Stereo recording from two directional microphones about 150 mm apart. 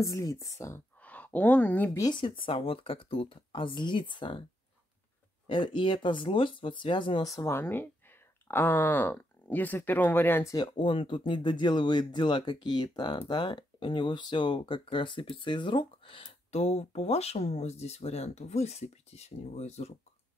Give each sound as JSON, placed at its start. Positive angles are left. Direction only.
{"t": 0.0, "sound": "speech", "side_deg": 20}
{"t": 2.0, "sound": "speech", "side_deg": 30}
{"t": 5.5, "sound": "speech", "side_deg": 35}
{"t": 10.5, "sound": "speech", "side_deg": 30}